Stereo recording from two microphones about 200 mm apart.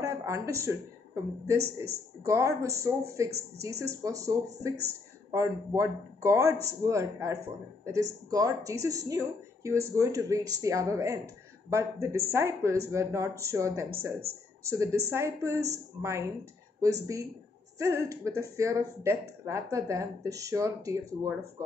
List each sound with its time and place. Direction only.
0.0 s a woman's voice: 15° right (ahead or behind)